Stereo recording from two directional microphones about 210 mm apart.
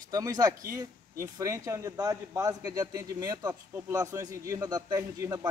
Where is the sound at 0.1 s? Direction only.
15° right (ahead or behind).